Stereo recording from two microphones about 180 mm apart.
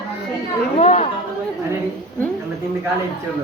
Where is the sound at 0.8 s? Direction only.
40° left (ahead or behind).